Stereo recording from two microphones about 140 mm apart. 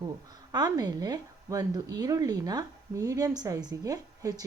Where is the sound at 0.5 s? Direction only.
30° right (ahead or behind).